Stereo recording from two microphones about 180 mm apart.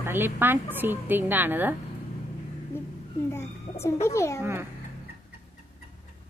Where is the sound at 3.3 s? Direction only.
15° left (ahead or behind).